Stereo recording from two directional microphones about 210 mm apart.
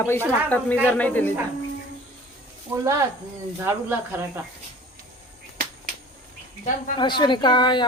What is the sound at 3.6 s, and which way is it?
Speech, 10° right (ahead or behind).